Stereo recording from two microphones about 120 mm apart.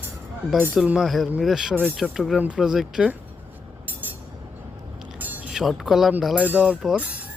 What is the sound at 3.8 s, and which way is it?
Train, 15° right (ahead or behind).